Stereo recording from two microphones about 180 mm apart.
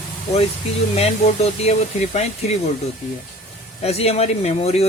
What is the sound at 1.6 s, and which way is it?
Speech, 35° left (ahead or behind).